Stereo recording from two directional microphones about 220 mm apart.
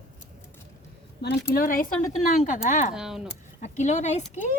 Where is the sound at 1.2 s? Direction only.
45° left (ahead or behind).